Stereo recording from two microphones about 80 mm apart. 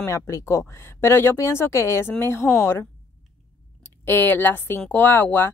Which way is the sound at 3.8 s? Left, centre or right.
Left.